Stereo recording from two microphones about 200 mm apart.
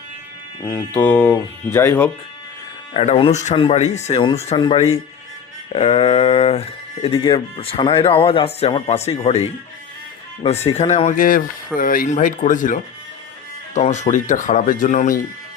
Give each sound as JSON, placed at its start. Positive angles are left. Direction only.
{"t": 0.6, "sound": "speech", "side_deg": 10}
{"t": 2.9, "sound": "speech", "side_deg": 30}